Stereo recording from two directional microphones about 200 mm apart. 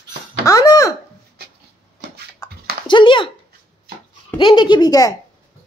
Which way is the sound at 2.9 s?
25° left (ahead or behind).